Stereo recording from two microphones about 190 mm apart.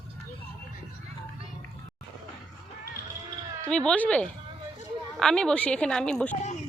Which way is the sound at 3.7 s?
5° left (ahead or behind).